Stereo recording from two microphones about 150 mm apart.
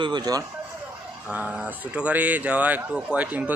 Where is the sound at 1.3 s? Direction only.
10° right (ahead or behind).